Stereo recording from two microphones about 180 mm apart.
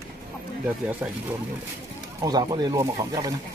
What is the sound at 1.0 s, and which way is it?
Speech, 10° right (ahead or behind).